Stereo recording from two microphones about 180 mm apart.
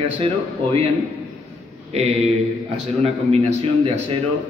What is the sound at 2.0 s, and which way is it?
A man's voice, 35° right (ahead or behind).